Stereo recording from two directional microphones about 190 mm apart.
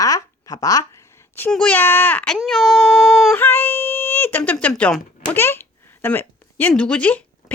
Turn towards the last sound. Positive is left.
turn(degrees=5)  # may be behind; listen again after turning